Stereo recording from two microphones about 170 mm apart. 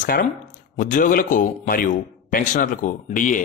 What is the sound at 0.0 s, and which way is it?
A man's voice, 50° left (ahead or behind).